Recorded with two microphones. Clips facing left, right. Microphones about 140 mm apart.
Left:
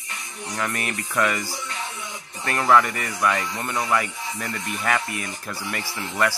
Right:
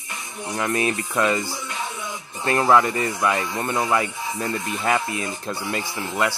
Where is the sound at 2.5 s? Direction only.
25° right (ahead or behind).